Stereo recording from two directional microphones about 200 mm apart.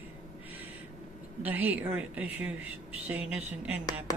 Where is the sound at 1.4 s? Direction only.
10° right (ahead or behind).